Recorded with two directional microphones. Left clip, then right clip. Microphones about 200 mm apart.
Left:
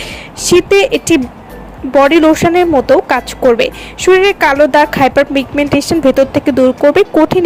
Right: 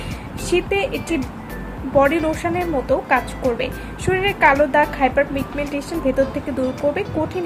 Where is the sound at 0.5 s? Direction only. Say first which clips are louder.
Left 11 dB; 50° left (ahead or behind).